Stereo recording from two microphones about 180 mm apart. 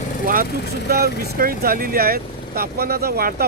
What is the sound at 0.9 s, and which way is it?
Speech, 60° right (ahead or behind).